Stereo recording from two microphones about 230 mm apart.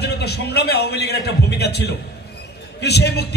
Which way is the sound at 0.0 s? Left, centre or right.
Left.